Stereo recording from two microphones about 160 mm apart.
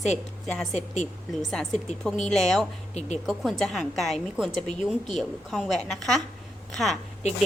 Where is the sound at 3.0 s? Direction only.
45° left (ahead or behind).